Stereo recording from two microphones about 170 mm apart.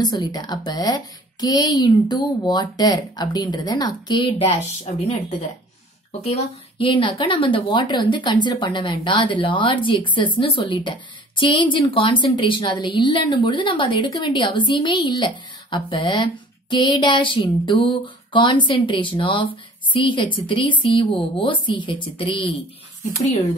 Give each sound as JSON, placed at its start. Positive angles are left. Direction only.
{"t": 0.0, "sound": "speech", "side_deg": 25}
{"t": 6.2, "sound": "speech", "side_deg": 35}